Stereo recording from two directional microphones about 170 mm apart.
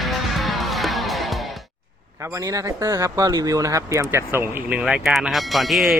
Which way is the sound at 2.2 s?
20° right (ahead or behind).